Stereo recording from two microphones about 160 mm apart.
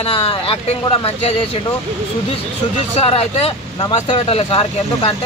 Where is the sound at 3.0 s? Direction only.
40° left (ahead or behind).